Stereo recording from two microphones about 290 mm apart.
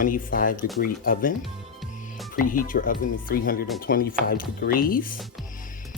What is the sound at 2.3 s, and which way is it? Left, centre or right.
Speech, left.